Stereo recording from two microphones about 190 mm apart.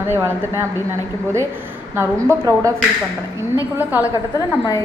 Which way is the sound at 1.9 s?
15° right (ahead or behind).